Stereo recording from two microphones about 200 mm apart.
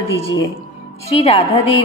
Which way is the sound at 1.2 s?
30° left (ahead or behind).